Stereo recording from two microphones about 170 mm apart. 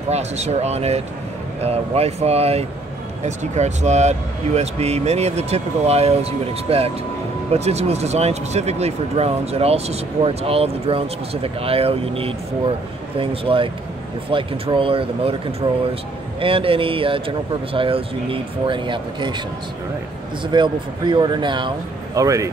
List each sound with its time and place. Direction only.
0.1 s speech: 40° right (ahead or behind)
20.4 s speech: 30° right (ahead or behind)